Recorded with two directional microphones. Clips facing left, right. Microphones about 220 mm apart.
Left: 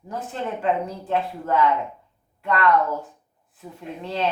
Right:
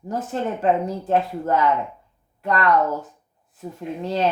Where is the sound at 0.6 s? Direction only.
45° right (ahead or behind).